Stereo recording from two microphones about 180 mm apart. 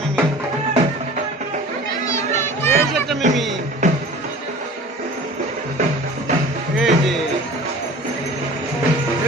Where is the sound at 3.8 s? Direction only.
45° right (ahead or behind).